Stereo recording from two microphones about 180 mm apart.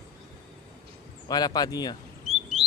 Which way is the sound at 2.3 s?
5° right (ahead or behind).